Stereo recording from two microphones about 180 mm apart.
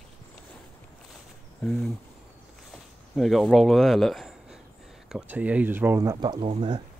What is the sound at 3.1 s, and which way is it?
Speech, centre (ahead or behind).